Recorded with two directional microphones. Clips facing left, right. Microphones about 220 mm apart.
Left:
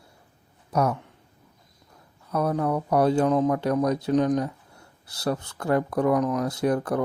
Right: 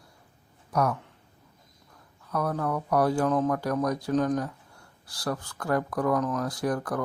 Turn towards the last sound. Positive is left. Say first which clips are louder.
# left 5 dB
turn(degrees=25)  # may be behind; listen again after turning